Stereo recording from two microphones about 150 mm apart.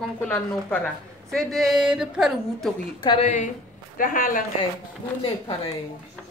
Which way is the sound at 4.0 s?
65° left (ahead or behind).